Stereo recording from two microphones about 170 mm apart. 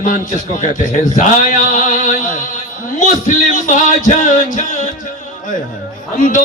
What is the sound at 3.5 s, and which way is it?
Music, 50° left (ahead or behind).